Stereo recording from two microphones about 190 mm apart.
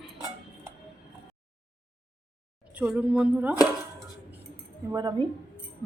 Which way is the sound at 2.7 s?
5° right (ahead or behind).